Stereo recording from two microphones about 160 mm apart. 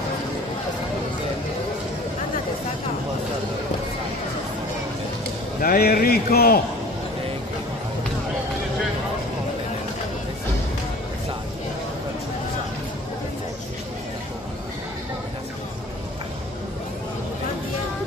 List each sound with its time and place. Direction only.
5.6 s a man's voice: 70° left (ahead or behind)